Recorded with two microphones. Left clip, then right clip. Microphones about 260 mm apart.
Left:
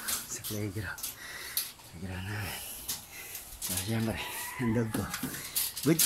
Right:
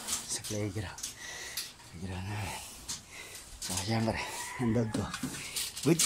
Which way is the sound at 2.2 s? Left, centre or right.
Centre.